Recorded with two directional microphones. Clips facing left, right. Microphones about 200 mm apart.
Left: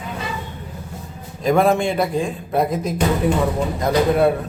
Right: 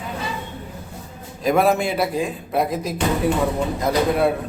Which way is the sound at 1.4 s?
5° right (ahead or behind).